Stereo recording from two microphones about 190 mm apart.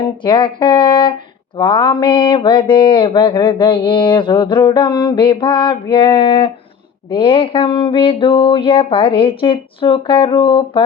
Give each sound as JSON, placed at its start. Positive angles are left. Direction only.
{"t": 0.2, "sound": "speech", "side_deg": 25}